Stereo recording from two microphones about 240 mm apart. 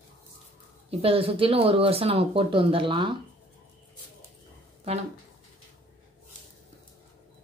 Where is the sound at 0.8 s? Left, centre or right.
Right.